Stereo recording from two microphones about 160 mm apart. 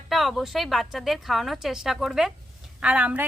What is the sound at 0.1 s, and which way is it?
A woman's voice, centre (ahead or behind).